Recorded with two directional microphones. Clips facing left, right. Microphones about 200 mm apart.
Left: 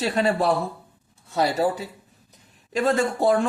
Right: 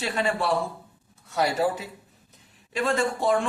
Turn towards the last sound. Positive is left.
turn(degrees=40)  # may be behind; listen again after turning